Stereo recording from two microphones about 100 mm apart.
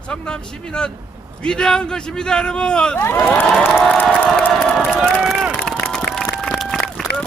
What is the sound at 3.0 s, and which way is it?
Speech, 20° left (ahead or behind).